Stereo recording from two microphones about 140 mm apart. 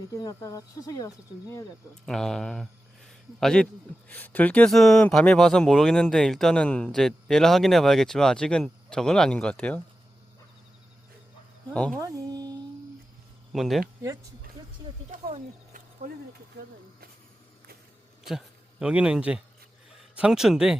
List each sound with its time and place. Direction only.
0.1 s speech: 25° left (ahead or behind)
2.0 s speech: centre (ahead or behind)
11.7 s speech: 10° left (ahead or behind)
11.9 s a sound: 25° right (ahead or behind)
13.5 s speech: centre (ahead or behind)
15.3 s a sound: 60° right (ahead or behind)
18.2 s speech: 5° right (ahead or behind)